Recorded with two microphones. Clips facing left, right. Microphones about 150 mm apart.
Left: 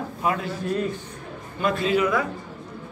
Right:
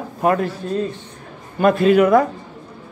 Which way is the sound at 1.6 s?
55° right (ahead or behind).